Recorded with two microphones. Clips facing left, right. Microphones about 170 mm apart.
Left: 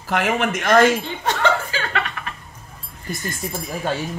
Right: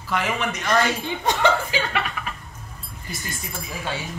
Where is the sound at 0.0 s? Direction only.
50° left (ahead or behind).